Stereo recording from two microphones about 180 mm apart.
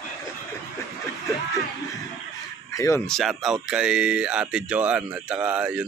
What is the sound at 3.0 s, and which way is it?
Speech, centre (ahead or behind).